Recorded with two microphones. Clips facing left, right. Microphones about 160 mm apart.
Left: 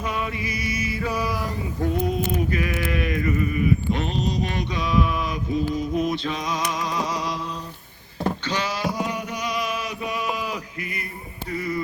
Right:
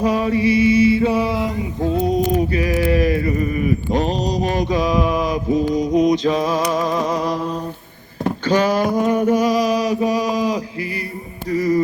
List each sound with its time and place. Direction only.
0.0 s mantra: 35° right (ahead or behind)
8.4 s a sound: 50° right (ahead or behind); by 11.0 s 35° right (ahead or behind)
11.4 s music: 40° right (ahead or behind)